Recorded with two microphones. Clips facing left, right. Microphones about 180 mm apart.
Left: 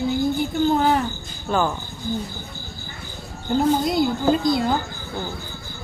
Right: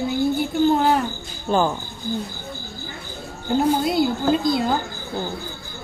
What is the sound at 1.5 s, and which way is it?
Speech, 25° right (ahead or behind).